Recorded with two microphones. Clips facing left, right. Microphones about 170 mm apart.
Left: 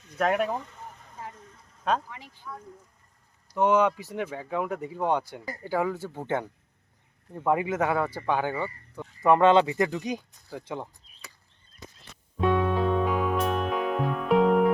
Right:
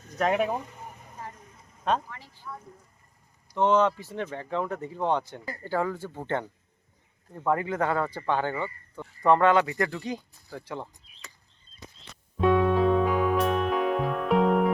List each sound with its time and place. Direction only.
0.2 s a sound: centre (ahead or behind)
1.8 s speech: centre (ahead or behind)
2.0 s speech: 15° left (ahead or behind)
2.4 s speech: 5° right (ahead or behind)
3.5 s speech: 10° left (ahead or behind)
11.1 s chop: 40° left (ahead or behind)
12.4 s music: centre (ahead or behind)